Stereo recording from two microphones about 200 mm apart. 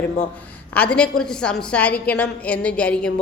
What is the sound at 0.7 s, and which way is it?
A woman's voice, 5° left (ahead or behind).